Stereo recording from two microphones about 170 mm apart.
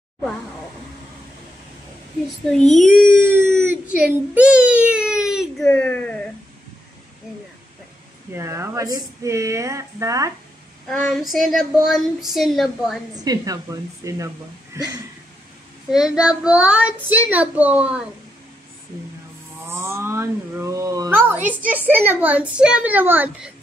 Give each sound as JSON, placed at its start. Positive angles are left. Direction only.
{"t": 3.2, "sound": "a sound", "side_deg": -15}
{"t": 5.7, "sound": "speech", "side_deg": 5}
{"t": 8.3, "sound": "a child's voice", "side_deg": -15}
{"t": 10.9, "sound": "child singing", "side_deg": 5}
{"t": 13.1, "sound": "a woman's voice", "side_deg": -20}
{"t": 15.9, "sound": "a child's voice", "side_deg": -5}
{"t": 19.6, "sound": "a child's voice", "side_deg": -15}